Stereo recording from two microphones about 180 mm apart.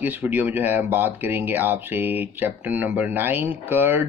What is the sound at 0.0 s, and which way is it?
Speech, 10° right (ahead or behind).